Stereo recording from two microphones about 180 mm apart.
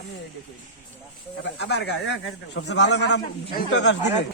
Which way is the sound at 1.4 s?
75° left (ahead or behind).